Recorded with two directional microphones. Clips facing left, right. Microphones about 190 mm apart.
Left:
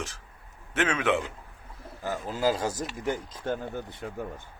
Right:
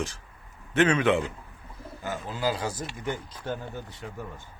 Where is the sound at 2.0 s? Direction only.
40° left (ahead or behind).